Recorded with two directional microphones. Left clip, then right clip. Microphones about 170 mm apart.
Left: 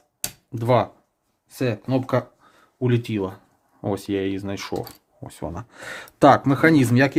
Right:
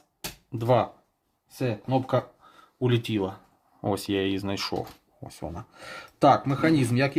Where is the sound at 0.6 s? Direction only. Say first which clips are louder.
Left 3 dB; 20° left (ahead or behind).